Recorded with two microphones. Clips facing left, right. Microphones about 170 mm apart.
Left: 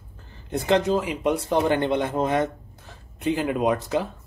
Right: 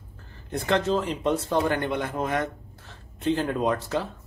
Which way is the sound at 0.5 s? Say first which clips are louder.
Left 3 dB; 20° left (ahead or behind).